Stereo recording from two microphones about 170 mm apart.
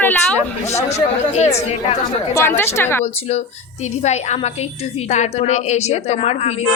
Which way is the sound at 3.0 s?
40° left (ahead or behind).